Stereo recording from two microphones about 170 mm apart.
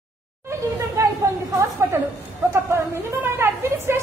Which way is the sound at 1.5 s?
20° right (ahead or behind).